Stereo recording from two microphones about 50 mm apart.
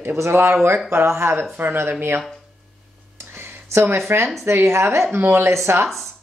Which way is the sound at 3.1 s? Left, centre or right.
Right.